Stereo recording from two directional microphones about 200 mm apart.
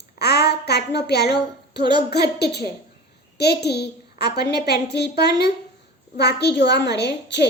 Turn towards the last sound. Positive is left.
turn(degrees=60)  # may be behind; listen again after turning